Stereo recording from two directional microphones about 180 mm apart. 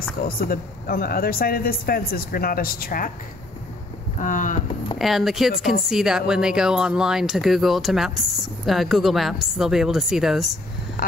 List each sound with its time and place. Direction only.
0.4 s a man's voice: 55° left (ahead or behind)
4.2 s a sound: 45° left (ahead or behind)
4.9 s speech: centre (ahead or behind)
11.0 s speech: 55° left (ahead or behind)